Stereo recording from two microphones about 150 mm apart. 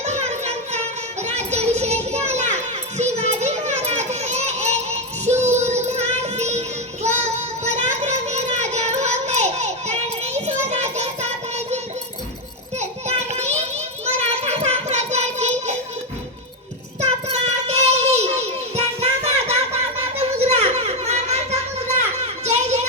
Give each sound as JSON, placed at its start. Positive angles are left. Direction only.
{"t": 0.0, "sound": "music", "side_deg": -50}
{"t": 1.2, "sound": "children playing", "side_deg": -50}
{"t": 13.3, "sound": "a sound", "side_deg": -50}
{"t": 17.2, "sound": "child singing", "side_deg": -45}